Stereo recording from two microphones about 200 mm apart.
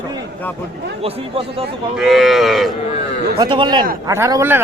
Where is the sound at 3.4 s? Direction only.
20° right (ahead or behind).